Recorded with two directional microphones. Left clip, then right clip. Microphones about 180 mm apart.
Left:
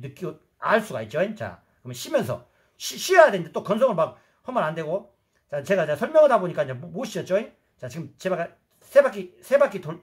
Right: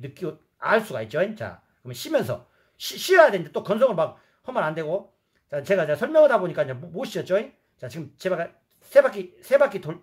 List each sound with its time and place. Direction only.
0.0 s speech: 20° right (ahead or behind)